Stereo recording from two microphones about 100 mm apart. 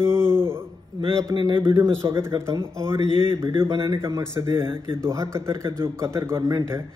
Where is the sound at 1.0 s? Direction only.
55° right (ahead or behind).